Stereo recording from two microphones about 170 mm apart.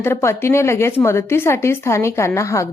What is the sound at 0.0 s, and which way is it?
A woman's voice, 15° left (ahead or behind).